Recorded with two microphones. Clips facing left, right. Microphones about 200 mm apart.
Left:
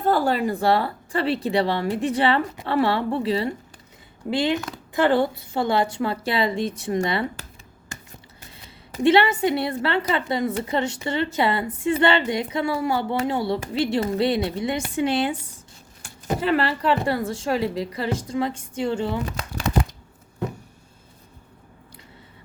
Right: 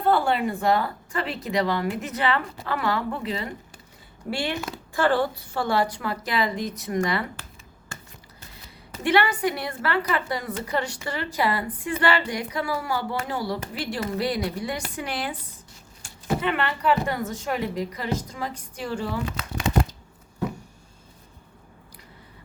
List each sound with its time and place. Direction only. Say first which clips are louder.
0.0 s a woman's voice: left 1 dB; 40° left (ahead or behind)
4.3 s a woman's voice: left 5 dB; 20° left (ahead or behind)
9.0 s a woman's voice: left 4 dB; 25° left (ahead or behind)